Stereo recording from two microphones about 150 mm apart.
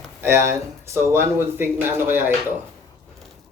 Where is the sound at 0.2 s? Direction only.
15° right (ahead or behind).